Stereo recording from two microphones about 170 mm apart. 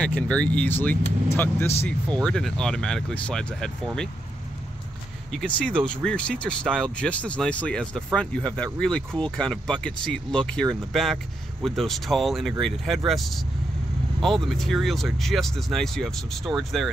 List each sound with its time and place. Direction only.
0.0 s speech: 5° left (ahead or behind)
5.3 s speech: 5° left (ahead or behind)